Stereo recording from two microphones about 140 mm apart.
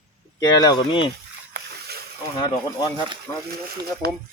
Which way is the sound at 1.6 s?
90° right.